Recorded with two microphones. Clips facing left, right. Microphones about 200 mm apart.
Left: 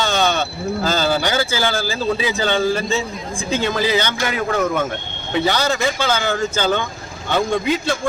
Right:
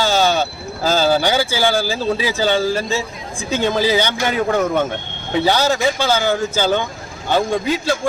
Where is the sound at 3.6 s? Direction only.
15° right (ahead or behind).